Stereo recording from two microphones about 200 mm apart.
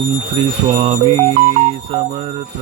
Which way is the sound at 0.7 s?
30° right (ahead or behind).